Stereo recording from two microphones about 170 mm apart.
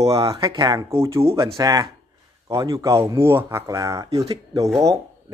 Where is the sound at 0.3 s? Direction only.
20° right (ahead or behind).